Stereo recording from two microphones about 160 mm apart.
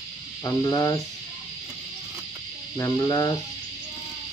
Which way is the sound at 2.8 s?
20° left (ahead or behind).